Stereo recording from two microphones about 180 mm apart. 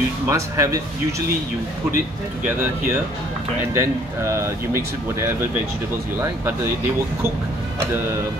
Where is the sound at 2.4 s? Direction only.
10° right (ahead or behind).